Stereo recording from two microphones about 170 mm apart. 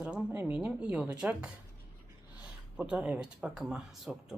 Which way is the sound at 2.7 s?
5° right (ahead or behind).